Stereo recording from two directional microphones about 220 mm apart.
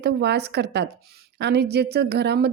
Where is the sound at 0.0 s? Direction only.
50° right (ahead or behind).